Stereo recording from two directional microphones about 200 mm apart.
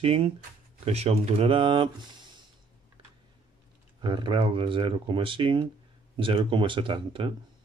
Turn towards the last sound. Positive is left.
turn(degrees=-25)  # may be behind; listen again after turning